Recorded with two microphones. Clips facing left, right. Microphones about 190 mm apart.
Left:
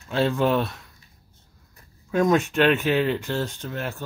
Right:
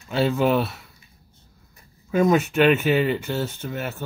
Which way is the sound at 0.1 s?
5° right (ahead or behind).